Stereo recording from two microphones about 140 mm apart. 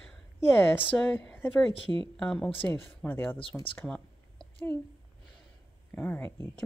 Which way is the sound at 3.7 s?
5° left (ahead or behind).